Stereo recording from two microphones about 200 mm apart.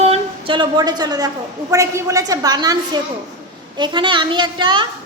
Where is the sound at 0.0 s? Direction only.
30° right (ahead or behind).